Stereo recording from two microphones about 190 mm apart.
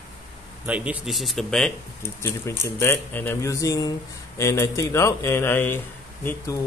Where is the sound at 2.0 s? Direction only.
15° left (ahead or behind).